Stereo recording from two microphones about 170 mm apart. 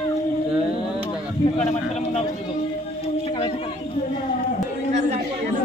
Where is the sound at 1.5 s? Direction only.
40° left (ahead or behind).